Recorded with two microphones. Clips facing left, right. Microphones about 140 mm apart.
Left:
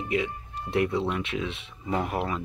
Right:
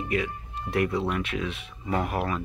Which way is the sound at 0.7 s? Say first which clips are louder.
Even; 25° left (ahead or behind).